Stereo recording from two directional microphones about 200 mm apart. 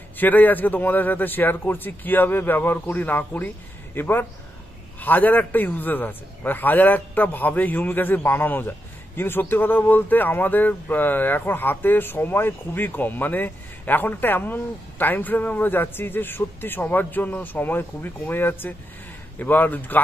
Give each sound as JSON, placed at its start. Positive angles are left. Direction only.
{"t": 0.2, "sound": "a man's voice", "side_deg": 10}